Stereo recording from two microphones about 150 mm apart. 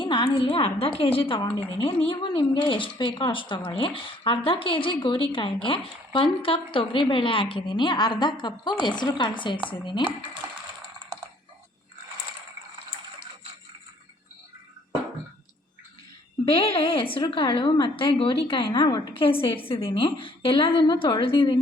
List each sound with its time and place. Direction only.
0.0 s a woman's voice: 30° left (ahead or behind)
16.5 s a woman's voice: 40° left (ahead or behind)